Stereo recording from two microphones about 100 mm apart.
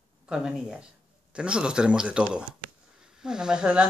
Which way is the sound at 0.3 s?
5° right (ahead or behind).